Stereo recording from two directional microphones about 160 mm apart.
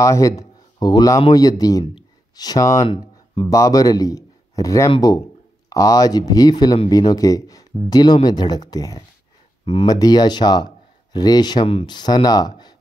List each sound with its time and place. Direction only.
0.0 s a man's voice: 20° left (ahead or behind)
2.9 s speech: 30° left (ahead or behind)
3.5 s a man's voice: 20° left (ahead or behind)